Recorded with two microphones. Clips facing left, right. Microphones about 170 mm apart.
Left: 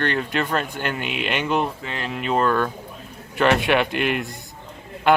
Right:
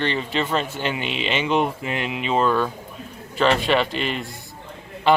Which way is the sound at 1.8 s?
15° right (ahead or behind).